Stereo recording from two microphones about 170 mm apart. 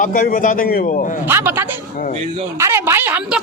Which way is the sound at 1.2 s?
10° right (ahead or behind).